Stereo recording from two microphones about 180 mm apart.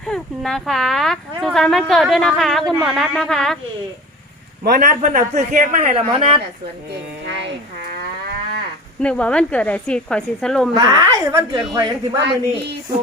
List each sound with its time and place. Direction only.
0.1 s speech: centre (ahead or behind)
4.6 s a man's voice: 45° right (ahead or behind); by 6.4 s 30° right (ahead or behind)
7.3 s speech: 75° right (ahead or behind)
9.0 s speech: 5° left (ahead or behind)
10.8 s a woman's voice: 20° right (ahead or behind)